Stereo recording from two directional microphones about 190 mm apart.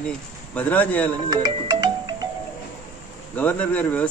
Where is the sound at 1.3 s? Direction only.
25° right (ahead or behind).